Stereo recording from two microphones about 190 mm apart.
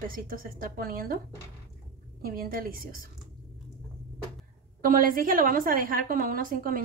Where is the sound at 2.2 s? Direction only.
50° right (ahead or behind).